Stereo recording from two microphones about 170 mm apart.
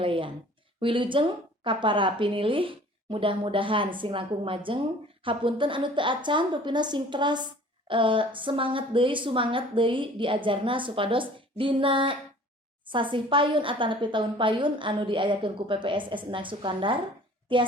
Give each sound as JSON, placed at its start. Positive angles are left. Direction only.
{"t": 0.0, "sound": "a woman's voice", "side_deg": -30}